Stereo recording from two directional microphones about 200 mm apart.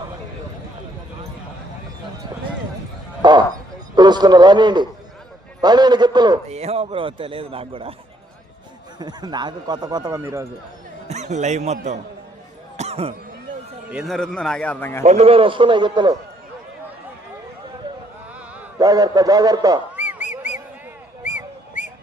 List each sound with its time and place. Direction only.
3.2 s a sound: 20° right (ahead or behind)
3.9 s a man's voice: 20° right (ahead or behind)
6.5 s a man's voice: 30° right (ahead or behind)
9.0 s a man's voice: 20° right (ahead or behind)
11.1 s a man's voice: 35° right (ahead or behind)
12.7 s a sound: 30° right (ahead or behind)
13.9 s a man's voice: centre (ahead or behind)
15.0 s a man's voice: 30° right (ahead or behind)
18.8 s a man's voice: 20° right (ahead or behind)
20.0 s honk: 10° right (ahead or behind)
21.2 s a sound: 40° left (ahead or behind)